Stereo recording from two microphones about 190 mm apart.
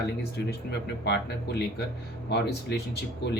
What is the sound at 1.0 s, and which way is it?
A man's voice, 60° left (ahead or behind).